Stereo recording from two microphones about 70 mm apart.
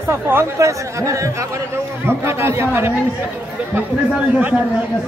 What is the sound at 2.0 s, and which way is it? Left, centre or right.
Speech, right.